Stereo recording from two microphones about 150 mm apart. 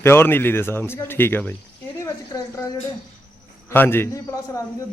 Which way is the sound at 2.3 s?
25° left (ahead or behind).